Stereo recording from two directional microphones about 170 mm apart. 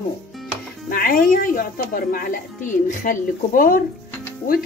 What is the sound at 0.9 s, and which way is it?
Speech, 55° left (ahead or behind).